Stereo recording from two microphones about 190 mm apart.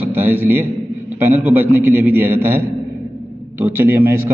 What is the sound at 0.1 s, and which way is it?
A man's voice, 10° right (ahead or behind).